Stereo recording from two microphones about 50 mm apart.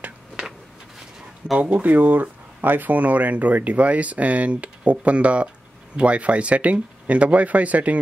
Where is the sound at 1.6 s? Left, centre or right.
Right.